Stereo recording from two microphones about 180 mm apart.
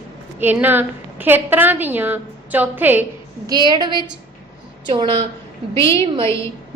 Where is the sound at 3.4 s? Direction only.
25° right (ahead or behind).